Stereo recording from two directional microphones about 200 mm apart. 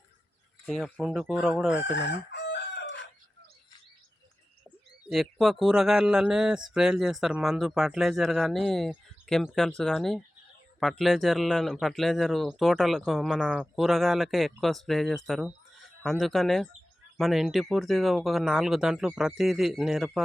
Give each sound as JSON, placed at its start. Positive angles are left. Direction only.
{"t": 0.6, "sound": "speech", "side_deg": 0}
{"t": 1.9, "sound": "chicken", "side_deg": 60}
{"t": 5.0, "sound": "speech", "side_deg": 0}